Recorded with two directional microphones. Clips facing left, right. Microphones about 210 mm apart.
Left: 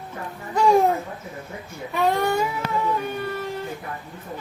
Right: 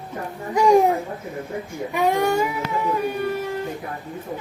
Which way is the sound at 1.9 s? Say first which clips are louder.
Right 2 dB; 15° right (ahead or behind).